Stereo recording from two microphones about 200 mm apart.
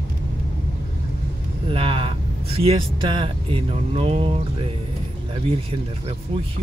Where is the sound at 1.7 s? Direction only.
25° right (ahead or behind).